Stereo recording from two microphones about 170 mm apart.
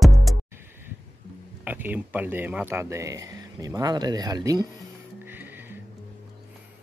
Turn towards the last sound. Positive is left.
turn(degrees=-10)  # may be behind; listen again after turning